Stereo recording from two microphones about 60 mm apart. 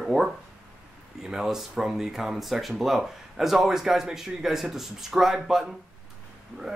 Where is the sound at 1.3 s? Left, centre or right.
Centre.